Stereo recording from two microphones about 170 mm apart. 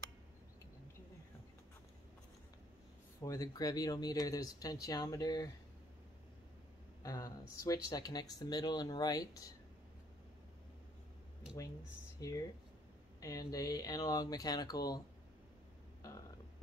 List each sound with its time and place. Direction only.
3.2 s speech: 20° left (ahead or behind)
7.0 s speech: 20° left (ahead or behind)
12.2 s speech: 20° left (ahead or behind)
16.0 s a sound: 20° left (ahead or behind)